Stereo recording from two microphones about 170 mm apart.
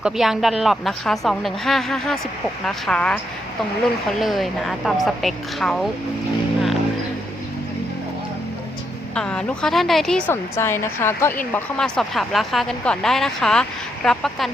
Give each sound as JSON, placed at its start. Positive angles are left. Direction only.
{"t": 0.0, "sound": "speech", "side_deg": 0}
{"t": 4.2, "sound": "speech", "side_deg": 0}
{"t": 9.1, "sound": "speech", "side_deg": 5}
{"t": 11.5, "sound": "speech", "side_deg": 5}